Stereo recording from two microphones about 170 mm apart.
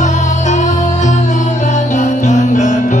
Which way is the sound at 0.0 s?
45° left (ahead or behind).